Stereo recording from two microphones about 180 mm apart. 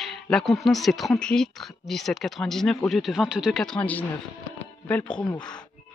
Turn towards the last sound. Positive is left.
turn(degrees=5)  # may be behind; listen again after turning